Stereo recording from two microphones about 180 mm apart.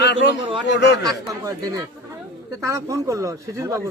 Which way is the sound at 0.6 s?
70° left (ahead or behind).